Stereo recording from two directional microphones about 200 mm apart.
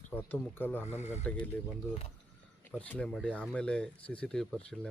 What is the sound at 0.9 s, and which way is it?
Speech, 35° left (ahead or behind).